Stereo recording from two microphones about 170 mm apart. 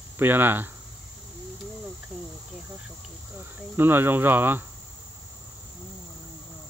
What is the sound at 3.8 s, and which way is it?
Speech, 10° right (ahead or behind).